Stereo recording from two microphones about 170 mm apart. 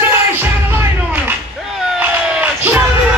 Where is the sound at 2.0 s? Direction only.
10° right (ahead or behind).